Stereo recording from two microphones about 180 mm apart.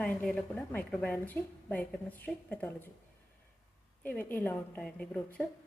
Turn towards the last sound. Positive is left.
turn(degrees=10)  # may be behind; listen again after turning